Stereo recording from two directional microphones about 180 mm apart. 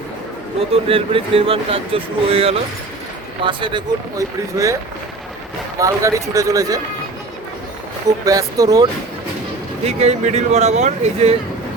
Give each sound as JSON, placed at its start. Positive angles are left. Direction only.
{"t": 0.7, "sound": "speech", "side_deg": -30}
{"t": 5.8, "sound": "speech", "side_deg": -15}
{"t": 8.2, "sound": "speech", "side_deg": -20}
{"t": 9.8, "sound": "speech", "side_deg": -35}